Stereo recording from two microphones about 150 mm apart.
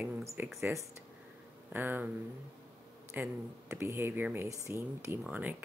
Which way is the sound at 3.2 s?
15° right (ahead or behind).